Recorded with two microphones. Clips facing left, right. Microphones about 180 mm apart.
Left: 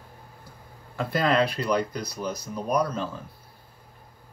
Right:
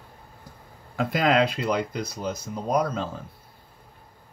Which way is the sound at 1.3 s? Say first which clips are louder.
Right 1 dB; 20° right (ahead or behind).